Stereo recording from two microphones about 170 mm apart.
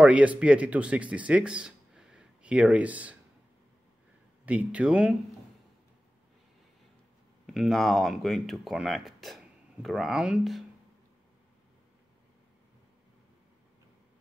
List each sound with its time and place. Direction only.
0.0 s speech: 10° right (ahead or behind)
4.5 s speech: 5° right (ahead or behind)
7.4 s speech: centre (ahead or behind)